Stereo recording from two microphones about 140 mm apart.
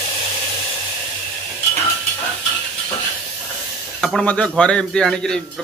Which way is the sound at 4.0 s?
5° left (ahead or behind).